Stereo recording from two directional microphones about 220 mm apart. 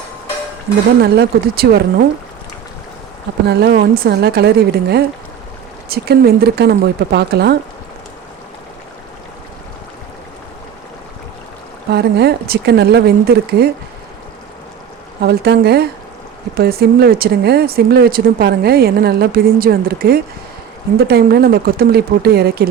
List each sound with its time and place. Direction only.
1.0 s speech: 45° right (ahead or behind)
3.4 s speech: 50° right (ahead or behind)
11.9 s speech: 50° right (ahead or behind)
15.2 s speech: 45° right (ahead or behind)